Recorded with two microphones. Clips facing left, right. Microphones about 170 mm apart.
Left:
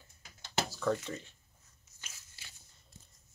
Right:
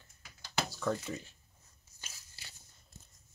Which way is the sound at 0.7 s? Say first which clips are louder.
Left 3 dB; centre (ahead or behind).